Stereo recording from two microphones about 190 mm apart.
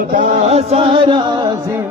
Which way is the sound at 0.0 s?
45° right (ahead or behind).